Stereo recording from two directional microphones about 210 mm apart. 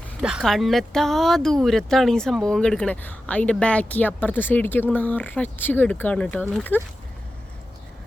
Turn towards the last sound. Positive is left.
turn(degrees=10)  # may be behind; listen again after turning